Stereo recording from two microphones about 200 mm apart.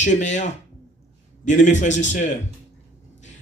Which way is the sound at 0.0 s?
35° left (ahead or behind).